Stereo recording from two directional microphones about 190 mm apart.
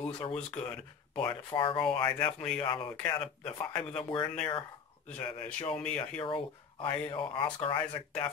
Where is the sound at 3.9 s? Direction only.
25° left (ahead or behind).